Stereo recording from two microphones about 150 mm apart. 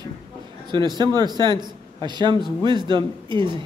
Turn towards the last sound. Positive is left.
turn(degrees=-30)  # may be behind; listen again after turning